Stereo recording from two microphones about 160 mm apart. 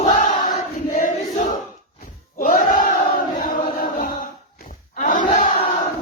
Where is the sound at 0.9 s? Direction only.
55° left (ahead or behind).